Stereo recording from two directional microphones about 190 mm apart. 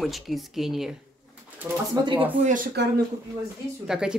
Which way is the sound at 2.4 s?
40° right (ahead or behind).